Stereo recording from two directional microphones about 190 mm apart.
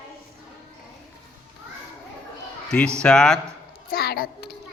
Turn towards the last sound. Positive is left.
turn(degrees=55)  # may be behind; listen again after turning